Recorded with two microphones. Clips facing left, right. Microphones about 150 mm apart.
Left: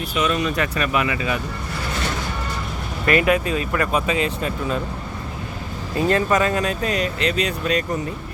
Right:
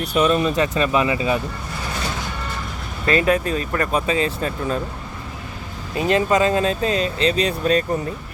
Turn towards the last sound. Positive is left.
turn(degrees=-35)  # may be behind; listen again after turning